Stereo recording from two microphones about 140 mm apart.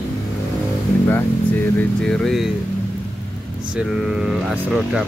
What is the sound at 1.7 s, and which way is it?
Speech, 5° left (ahead or behind).